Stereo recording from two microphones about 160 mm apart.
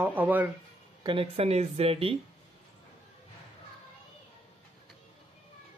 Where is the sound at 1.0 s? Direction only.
35° right (ahead or behind).